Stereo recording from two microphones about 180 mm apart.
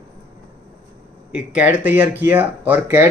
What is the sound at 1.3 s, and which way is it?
Speech, 5° right (ahead or behind).